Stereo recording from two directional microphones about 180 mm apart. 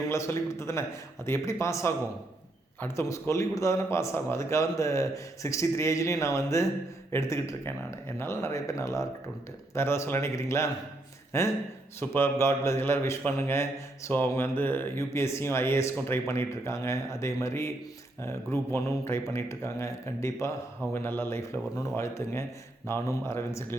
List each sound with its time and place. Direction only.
0.1 s a man's voice: 15° left (ahead or behind)